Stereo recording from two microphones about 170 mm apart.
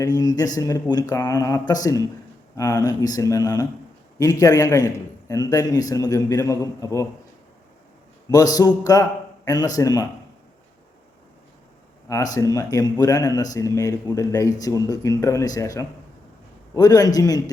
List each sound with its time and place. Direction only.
0.0 s speech: 20° left (ahead or behind)
8.3 s speech: 20° left (ahead or behind)
12.0 s speech: 20° left (ahead or behind)